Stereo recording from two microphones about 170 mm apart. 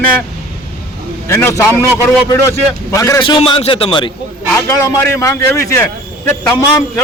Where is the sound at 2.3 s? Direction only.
15° left (ahead or behind).